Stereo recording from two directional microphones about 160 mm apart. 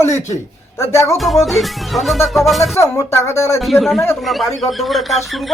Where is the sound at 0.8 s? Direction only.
15° left (ahead or behind).